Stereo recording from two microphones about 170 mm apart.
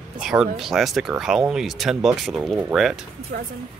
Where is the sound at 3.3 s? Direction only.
65° right (ahead or behind).